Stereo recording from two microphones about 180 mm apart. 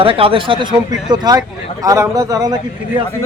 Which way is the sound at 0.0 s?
30° right (ahead or behind).